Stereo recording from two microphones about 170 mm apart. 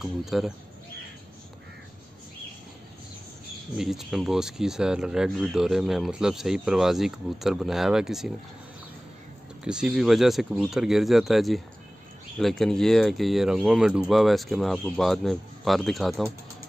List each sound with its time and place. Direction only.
0.0 s speech: centre (ahead or behind)
3.7 s speech: centre (ahead or behind)
9.7 s speech: 5° right (ahead or behind)